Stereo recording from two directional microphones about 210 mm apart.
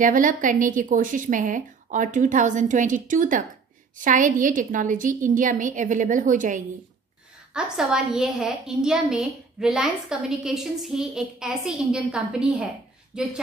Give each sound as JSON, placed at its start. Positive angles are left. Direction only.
{"t": 0.0, "sound": "a woman's voice", "side_deg": -40}
{"t": 7.5, "sound": "a woman's voice", "side_deg": -5}